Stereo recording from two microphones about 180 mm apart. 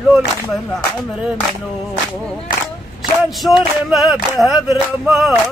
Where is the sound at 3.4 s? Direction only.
Centre (ahead or behind).